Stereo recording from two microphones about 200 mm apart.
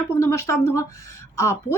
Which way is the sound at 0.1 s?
15° left (ahead or behind).